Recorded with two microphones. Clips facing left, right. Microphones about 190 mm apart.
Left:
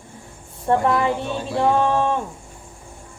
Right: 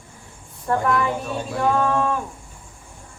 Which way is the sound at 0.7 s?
25° left (ahead or behind).